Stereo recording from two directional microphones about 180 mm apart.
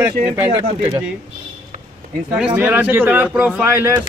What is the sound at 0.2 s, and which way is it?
Speech, 45° right (ahead or behind).